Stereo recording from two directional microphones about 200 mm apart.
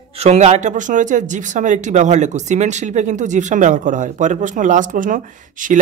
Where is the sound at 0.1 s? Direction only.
30° right (ahead or behind).